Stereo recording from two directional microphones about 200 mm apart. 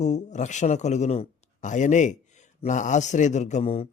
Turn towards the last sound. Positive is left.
turn(degrees=30)  # may be behind; listen again after turning